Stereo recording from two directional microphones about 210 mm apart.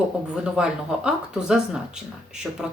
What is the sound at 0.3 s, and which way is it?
Speech, 5° right (ahead or behind).